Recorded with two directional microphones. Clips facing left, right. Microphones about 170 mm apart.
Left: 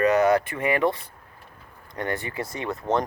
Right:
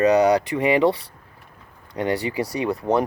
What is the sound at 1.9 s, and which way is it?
Speech, 15° right (ahead or behind).